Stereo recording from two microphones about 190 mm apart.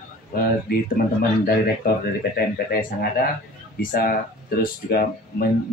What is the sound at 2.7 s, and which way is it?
Speech, 50° left (ahead or behind).